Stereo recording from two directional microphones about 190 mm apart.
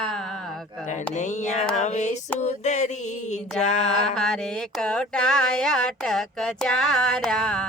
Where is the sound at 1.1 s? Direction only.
40° left (ahead or behind).